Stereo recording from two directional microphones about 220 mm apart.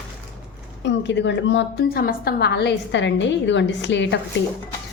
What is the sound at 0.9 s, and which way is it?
A woman's voice, 55° left (ahead or behind).